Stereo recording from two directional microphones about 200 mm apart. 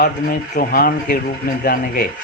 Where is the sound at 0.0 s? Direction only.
45° left (ahead or behind).